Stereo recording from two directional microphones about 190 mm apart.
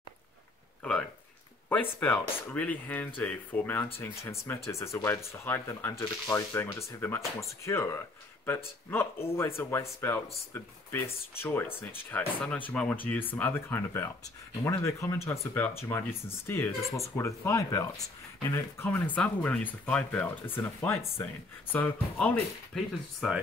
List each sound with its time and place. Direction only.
0.8 s speech: 5° left (ahead or behind)